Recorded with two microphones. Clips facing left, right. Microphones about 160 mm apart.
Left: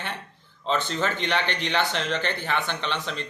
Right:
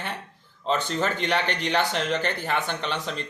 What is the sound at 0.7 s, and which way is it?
Speech, 40° right (ahead or behind).